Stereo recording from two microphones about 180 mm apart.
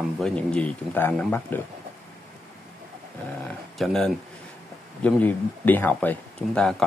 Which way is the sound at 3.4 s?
Centre (ahead or behind).